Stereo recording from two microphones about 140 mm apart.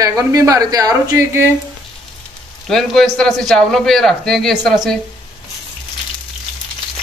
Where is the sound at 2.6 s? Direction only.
Centre (ahead or behind).